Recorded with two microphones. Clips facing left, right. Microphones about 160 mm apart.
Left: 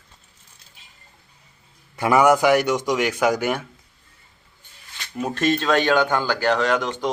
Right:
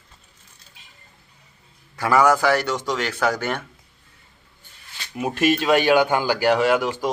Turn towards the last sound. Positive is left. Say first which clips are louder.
# right 2 dB
turn(degrees=-5)  # may be behind; listen again after turning